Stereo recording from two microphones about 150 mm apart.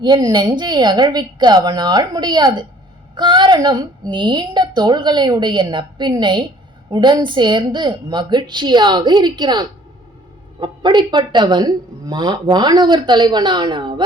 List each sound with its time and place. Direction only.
0.0 s speech: 30° right (ahead or behind)